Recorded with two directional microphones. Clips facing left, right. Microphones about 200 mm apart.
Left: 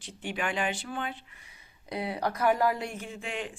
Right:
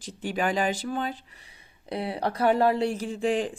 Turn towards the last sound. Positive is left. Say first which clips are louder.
# right 11 dB
turn(degrees=-35)  # may be behind; listen again after turning